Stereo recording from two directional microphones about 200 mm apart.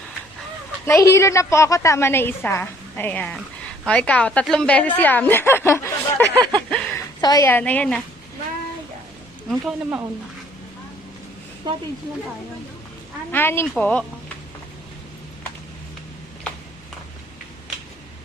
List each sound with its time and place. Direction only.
0.9 s a woman's voice: 15° left (ahead or behind)
6.7 s a sound: 5° left (ahead or behind)
7.2 s a woman's voice: 20° left (ahead or behind)
9.5 s a woman's voice: 5° right (ahead or behind)
13.3 s a woman's voice: 10° left (ahead or behind)